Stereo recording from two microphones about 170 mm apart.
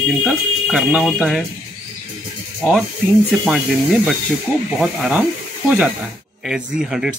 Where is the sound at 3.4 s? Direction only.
Centre (ahead or behind).